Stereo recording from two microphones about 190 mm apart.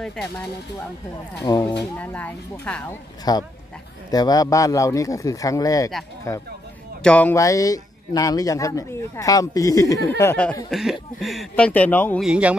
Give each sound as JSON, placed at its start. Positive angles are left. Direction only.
{"t": 0.0, "sound": "speech", "side_deg": 5}
{"t": 1.4, "sound": "speech", "side_deg": 20}
{"t": 1.8, "sound": "speech", "side_deg": 10}
{"t": 3.3, "sound": "speech", "side_deg": 20}
{"t": 12.2, "sound": "speech", "side_deg": -5}